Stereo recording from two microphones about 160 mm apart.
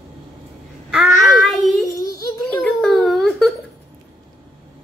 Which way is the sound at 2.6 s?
5° left (ahead or behind).